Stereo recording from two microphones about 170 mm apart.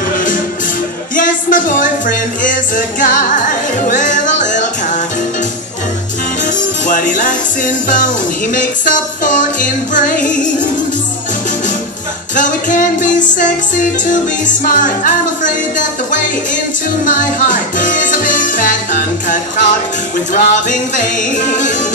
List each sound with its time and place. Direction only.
1.1 s speech: 50° left (ahead or behind)
6.4 s music: 50° left (ahead or behind)
8.5 s speech: 50° left (ahead or behind)
12.4 s speech: 50° left (ahead or behind)
17.0 s music: 50° left (ahead or behind)
20.3 s speech: 50° left (ahead or behind)